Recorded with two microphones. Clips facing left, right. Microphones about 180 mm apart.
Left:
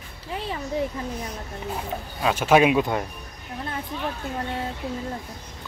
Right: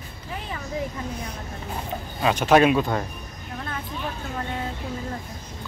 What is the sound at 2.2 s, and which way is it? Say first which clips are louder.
Speech: right 1 dB; 5° left (ahead or behind).